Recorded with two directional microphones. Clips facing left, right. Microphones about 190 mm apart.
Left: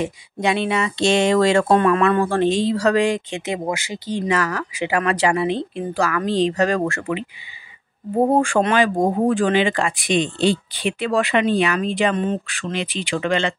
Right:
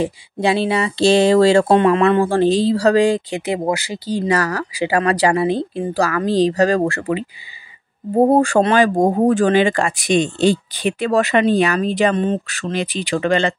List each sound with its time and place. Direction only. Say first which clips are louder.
0.0 s speech: right 3 dB; 30° right (ahead or behind)
8.3 s speech: right 3 dB; 35° right (ahead or behind)